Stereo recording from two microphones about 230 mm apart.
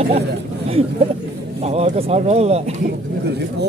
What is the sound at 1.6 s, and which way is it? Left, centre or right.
Speech, right.